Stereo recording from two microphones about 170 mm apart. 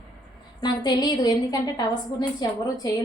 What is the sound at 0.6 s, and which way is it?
A woman's voice, 25° left (ahead or behind).